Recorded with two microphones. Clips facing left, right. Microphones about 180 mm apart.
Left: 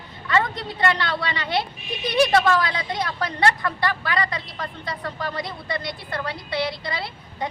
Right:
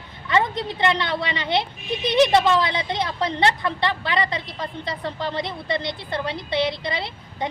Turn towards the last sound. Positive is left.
turn(degrees=-20)  # may be behind; listen again after turning